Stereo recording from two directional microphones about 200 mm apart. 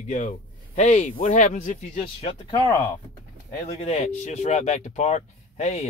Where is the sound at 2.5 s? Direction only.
15° left (ahead or behind).